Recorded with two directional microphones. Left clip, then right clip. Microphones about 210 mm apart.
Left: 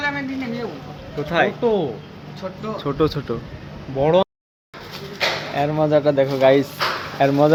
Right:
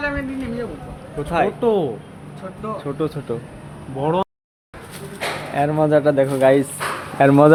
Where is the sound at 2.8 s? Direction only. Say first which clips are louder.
Left 6 dB; 35° left (ahead or behind).